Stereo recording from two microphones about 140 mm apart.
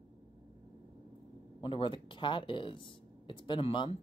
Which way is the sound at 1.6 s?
35° left (ahead or behind).